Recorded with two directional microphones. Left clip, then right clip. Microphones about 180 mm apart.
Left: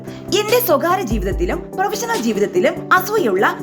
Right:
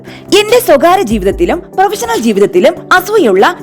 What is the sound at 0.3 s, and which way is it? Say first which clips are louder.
A woman's voice: right 9 dB; 45° right (ahead or behind).